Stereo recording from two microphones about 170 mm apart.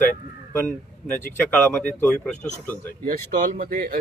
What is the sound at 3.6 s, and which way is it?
Speech, 55° right (ahead or behind).